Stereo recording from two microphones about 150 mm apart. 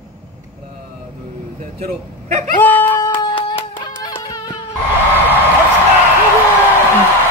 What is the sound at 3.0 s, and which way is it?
Music, 35° left (ahead or behind).